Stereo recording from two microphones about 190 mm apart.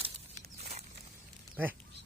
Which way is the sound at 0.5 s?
35° right (ahead or behind).